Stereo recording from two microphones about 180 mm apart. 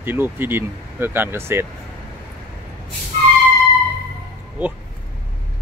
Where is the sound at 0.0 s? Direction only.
10° right (ahead or behind).